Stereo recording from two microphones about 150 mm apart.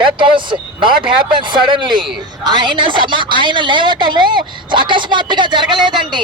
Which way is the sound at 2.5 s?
30° right (ahead or behind).